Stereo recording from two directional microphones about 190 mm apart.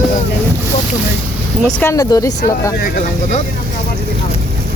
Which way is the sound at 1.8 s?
15° left (ahead or behind).